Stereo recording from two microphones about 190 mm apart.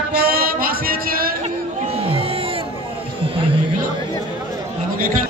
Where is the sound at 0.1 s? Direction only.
55° right (ahead or behind).